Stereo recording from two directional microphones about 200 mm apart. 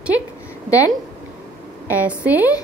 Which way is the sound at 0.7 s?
15° left (ahead or behind).